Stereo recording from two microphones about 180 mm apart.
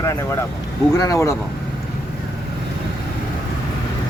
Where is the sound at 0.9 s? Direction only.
20° left (ahead or behind).